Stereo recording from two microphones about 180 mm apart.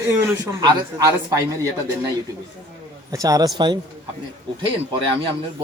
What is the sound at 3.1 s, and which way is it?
Speech, 20° right (ahead or behind).